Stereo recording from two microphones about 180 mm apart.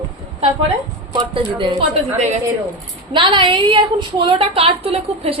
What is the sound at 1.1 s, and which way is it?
Speech, 25° right (ahead or behind).